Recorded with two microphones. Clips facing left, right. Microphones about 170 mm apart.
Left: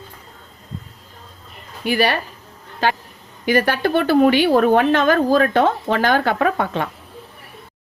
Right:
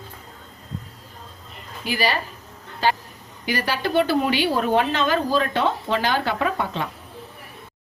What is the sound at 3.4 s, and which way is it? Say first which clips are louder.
A woman's voice: left 7 dB; 50° left (ahead or behind).